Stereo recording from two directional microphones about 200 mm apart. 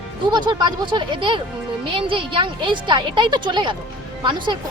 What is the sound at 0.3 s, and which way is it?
Speech, 20° right (ahead or behind).